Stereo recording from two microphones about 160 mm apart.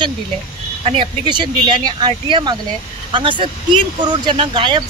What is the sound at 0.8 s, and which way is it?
Speech, 30° right (ahead or behind).